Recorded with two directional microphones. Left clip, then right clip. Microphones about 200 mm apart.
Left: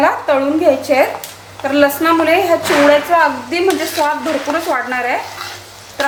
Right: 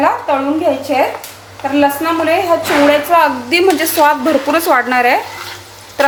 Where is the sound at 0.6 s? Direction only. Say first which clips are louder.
Left 2 dB; 20° left (ahead or behind).